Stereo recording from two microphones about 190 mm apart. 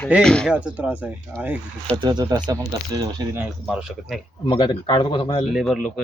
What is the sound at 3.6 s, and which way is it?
Speech, centre (ahead or behind).